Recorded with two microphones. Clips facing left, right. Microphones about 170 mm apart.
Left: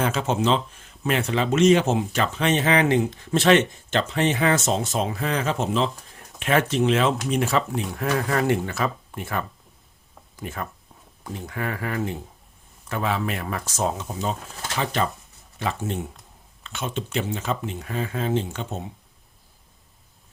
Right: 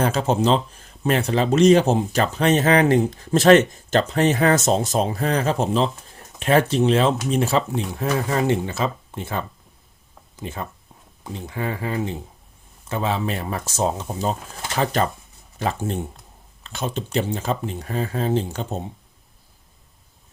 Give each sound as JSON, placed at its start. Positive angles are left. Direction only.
{"t": 0.0, "sound": "speech", "side_deg": -40}
{"t": 5.9, "sound": "a sound", "side_deg": 0}
{"t": 6.4, "sound": "speech", "side_deg": -35}
{"t": 8.0, "sound": "speech", "side_deg": 0}
{"t": 8.3, "sound": "speech", "side_deg": -25}
{"t": 14.3, "sound": "speech", "side_deg": -5}
{"t": 15.8, "sound": "speech", "side_deg": -30}